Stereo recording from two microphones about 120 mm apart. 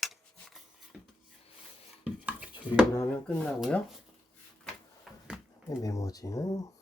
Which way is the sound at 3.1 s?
10° left (ahead or behind).